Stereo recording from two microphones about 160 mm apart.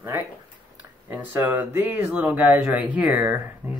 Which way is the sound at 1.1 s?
10° right (ahead or behind).